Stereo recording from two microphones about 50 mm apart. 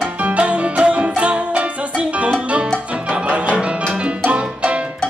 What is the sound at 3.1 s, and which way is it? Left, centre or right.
Music, right.